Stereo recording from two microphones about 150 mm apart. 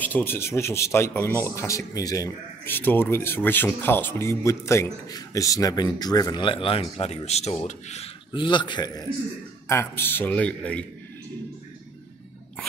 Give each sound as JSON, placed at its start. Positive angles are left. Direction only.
{"t": 0.0, "sound": "speech", "side_deg": 15}
{"t": 8.3, "sound": "speech", "side_deg": 30}
{"t": 9.7, "sound": "speech", "side_deg": 15}